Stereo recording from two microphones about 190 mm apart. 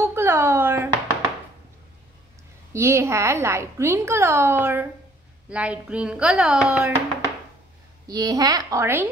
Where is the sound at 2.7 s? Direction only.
15° right (ahead or behind).